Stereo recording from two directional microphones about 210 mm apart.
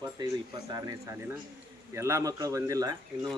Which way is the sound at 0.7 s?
15° right (ahead or behind).